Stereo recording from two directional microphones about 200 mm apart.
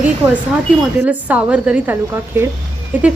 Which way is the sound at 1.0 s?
5° right (ahead or behind).